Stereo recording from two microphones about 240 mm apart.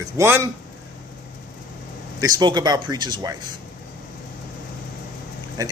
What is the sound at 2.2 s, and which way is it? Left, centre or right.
A man's voice, centre.